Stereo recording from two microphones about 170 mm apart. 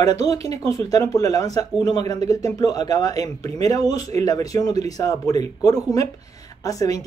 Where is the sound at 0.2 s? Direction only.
20° left (ahead or behind).